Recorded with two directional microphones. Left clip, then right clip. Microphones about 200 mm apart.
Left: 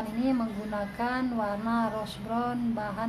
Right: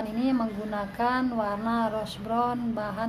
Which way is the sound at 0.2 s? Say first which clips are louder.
Right 2 dB; 25° right (ahead or behind).